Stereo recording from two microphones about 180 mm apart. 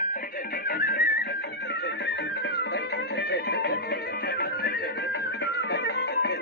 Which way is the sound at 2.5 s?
65° left (ahead or behind).